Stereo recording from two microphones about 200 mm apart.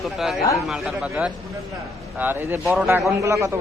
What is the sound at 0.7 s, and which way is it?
A man's voice, centre (ahead or behind).